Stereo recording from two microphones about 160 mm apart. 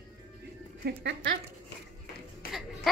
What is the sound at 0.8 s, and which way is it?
Speech, 90° right.